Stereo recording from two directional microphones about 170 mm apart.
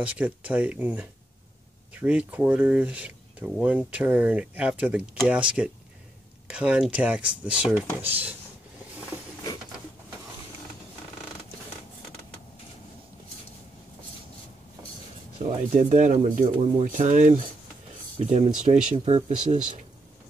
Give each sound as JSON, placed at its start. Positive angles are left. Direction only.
{"t": 0.0, "sound": "speech", "side_deg": -10}
{"t": 15.3, "sound": "speech", "side_deg": -40}